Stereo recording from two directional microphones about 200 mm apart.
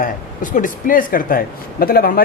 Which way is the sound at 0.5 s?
45° left (ahead or behind).